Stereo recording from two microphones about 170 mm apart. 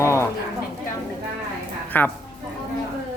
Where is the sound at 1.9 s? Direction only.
10° left (ahead or behind).